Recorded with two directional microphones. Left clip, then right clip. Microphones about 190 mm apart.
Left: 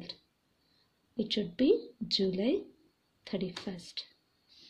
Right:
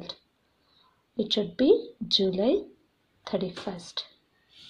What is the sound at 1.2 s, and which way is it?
A woman's voice, 45° left (ahead or behind).